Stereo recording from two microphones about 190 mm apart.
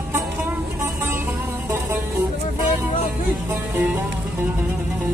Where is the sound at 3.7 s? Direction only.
10° right (ahead or behind).